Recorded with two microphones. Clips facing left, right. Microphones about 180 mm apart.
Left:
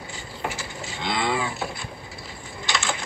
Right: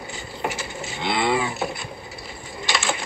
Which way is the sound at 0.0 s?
65° right (ahead or behind).